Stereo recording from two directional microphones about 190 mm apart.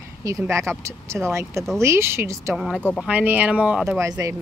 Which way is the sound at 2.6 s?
Centre (ahead or behind).